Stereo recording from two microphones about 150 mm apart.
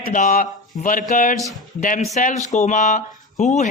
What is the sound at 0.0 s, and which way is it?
Speech, 65° left (ahead or behind).